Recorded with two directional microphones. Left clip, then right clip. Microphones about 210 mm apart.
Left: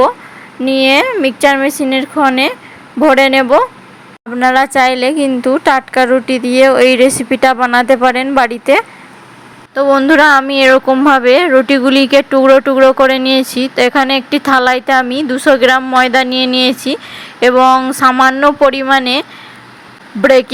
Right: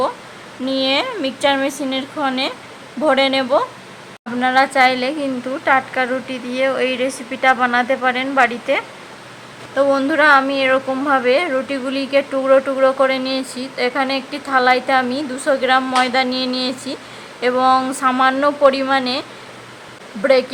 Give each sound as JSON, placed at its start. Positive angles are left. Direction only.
{"t": 0.8, "sound": "a woman's voice", "side_deg": 30}